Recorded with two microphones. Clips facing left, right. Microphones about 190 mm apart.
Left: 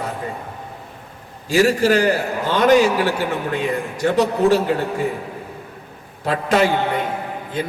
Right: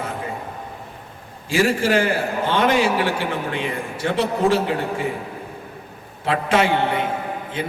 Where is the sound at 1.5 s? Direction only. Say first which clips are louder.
Left 3 dB; 40° left (ahead or behind).